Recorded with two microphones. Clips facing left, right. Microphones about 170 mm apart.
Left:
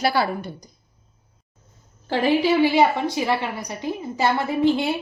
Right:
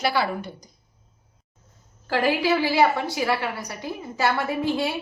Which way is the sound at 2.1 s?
20° left (ahead or behind).